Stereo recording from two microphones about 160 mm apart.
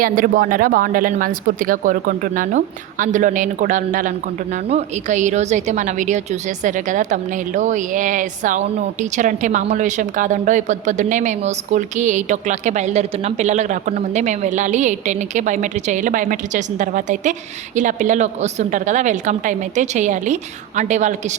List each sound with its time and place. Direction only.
0.0 s a woman's voice: 60° right (ahead or behind)